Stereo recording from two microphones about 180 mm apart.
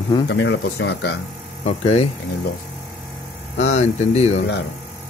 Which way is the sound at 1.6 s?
35° left (ahead or behind).